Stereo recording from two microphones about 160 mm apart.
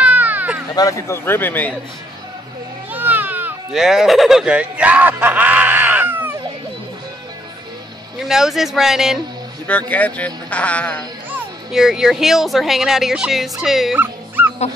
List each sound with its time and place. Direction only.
0.0 s a sound: 10° right (ahead or behind)
0.7 s speech: 20° left (ahead or behind)
2.9 s a sound: 10° right (ahead or behind)
8.2 s speech: centre (ahead or behind)
9.7 s speech: 10° left (ahead or behind)
11.3 s speech: 5° right (ahead or behind)
13.9 s dog: 10° right (ahead or behind)